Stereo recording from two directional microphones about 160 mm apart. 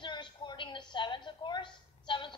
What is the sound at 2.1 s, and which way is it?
Music, 30° left (ahead or behind).